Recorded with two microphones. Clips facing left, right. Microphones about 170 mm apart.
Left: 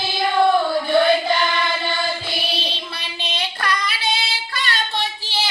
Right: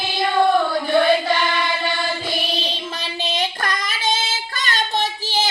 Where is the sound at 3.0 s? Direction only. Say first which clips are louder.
Right 6 dB; 40° right (ahead or behind).